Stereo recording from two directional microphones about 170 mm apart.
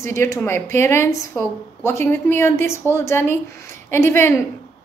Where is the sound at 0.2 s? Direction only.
15° left (ahead or behind).